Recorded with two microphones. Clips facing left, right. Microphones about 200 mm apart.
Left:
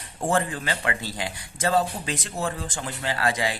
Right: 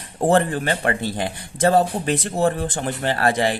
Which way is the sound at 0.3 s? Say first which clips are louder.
Right 7 dB; 60° right (ahead or behind).